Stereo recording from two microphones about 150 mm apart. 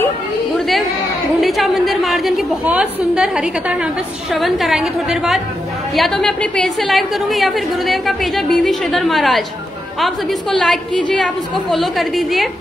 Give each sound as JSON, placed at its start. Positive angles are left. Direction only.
{"t": 1.4, "sound": "a woman's voice", "side_deg": 0}